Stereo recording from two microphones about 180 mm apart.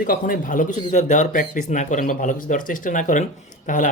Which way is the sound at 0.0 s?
50° left (ahead or behind).